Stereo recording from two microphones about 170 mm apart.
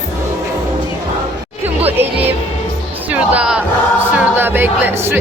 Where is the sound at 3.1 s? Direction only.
5° right (ahead or behind).